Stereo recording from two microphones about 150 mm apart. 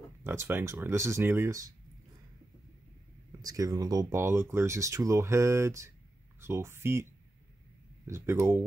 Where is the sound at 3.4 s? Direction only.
25° right (ahead or behind).